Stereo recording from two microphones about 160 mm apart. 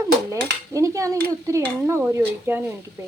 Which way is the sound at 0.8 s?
20° right (ahead or behind).